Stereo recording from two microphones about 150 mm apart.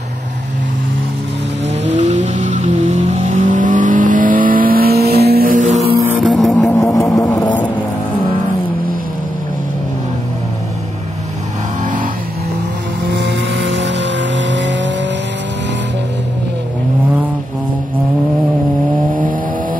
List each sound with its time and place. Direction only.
1.9 s vehicle: 50° right (ahead or behind)
5.9 s music: 10° right (ahead or behind)
6.2 s vehicle: centre (ahead or behind)
6.7 s a sound: 20° left (ahead or behind)
11.8 s vehicle: 60° right (ahead or behind)